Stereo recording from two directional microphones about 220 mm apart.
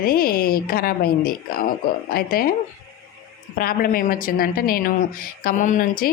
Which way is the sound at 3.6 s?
40° left (ahead or behind).